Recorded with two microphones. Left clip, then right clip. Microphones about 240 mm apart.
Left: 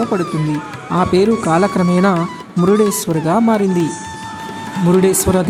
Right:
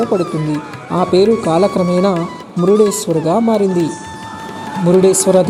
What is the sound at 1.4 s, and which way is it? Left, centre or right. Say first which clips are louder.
Speech: right 1 dB; left.